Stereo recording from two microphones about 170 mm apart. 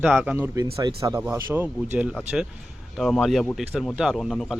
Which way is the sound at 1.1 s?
10° right (ahead or behind).